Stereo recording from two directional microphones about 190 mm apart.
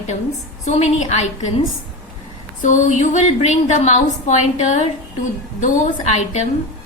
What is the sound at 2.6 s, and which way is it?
A woman's voice, 40° left (ahead or behind).